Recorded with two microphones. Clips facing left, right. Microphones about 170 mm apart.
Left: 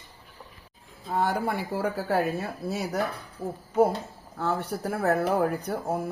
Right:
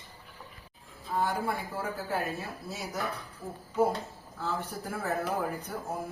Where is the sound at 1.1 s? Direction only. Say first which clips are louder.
Left 4 dB; 70° left (ahead or behind).